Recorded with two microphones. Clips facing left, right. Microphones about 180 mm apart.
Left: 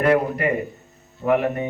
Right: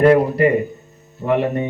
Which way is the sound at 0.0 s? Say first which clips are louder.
Right 6 dB; 35° right (ahead or behind).